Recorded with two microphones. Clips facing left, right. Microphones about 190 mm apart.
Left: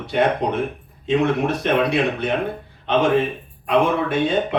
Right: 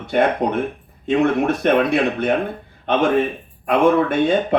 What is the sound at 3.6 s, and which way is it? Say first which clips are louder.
Speech: right 3 dB; 50° right (ahead or behind).